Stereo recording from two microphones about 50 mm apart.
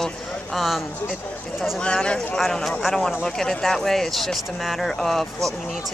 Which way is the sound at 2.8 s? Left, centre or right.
Centre.